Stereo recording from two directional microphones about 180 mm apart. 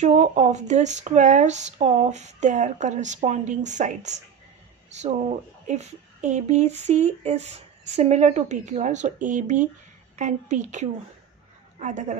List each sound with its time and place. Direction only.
0.0 s speech: 40° right (ahead or behind)